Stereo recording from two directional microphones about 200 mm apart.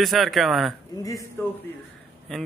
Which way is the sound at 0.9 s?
15° left (ahead or behind).